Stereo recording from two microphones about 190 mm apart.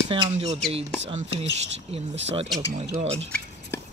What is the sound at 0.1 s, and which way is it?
Speech, 30° right (ahead or behind).